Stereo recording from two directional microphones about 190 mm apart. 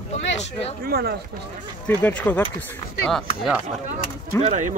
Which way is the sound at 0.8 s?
55° right (ahead or behind).